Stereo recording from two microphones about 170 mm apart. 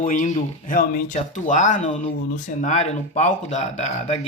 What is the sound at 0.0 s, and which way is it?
Speech, 50° left (ahead or behind).